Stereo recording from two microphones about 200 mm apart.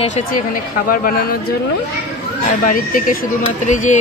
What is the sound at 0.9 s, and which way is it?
Speech, 45° left (ahead or behind).